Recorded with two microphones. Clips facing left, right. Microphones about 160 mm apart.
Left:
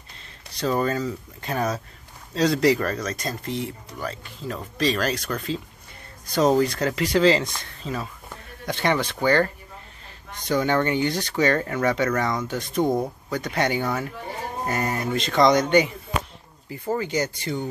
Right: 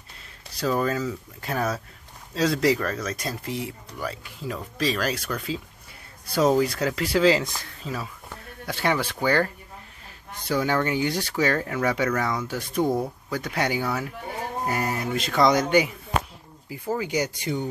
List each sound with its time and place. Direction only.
0.5 s speech: centre (ahead or behind)
6.6 s speech: 5° right (ahead or behind)
12.8 s speech: 15° left (ahead or behind)
13.3 s speech: 5° right (ahead or behind)